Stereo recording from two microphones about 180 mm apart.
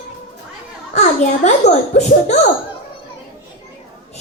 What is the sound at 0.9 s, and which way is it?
Speech, 40° left (ahead or behind).